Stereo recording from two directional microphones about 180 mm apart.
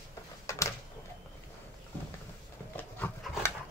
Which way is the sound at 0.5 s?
15° left (ahead or behind).